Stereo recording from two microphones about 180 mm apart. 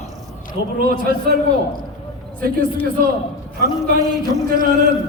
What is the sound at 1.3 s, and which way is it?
Speech, 60° right (ahead or behind).